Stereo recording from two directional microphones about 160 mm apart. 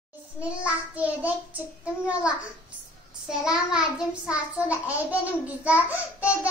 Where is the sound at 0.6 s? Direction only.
10° right (ahead or behind).